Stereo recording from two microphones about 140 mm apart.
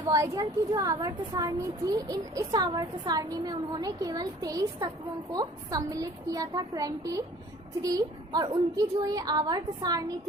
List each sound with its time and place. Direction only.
0.0 s speech: 25° right (ahead or behind)